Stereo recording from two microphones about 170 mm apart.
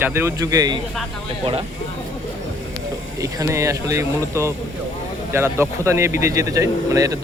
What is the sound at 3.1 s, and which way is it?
Speech, 20° right (ahead or behind).